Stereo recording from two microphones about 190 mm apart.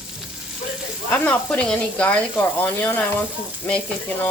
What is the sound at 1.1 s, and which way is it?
Speech, 10° left (ahead or behind).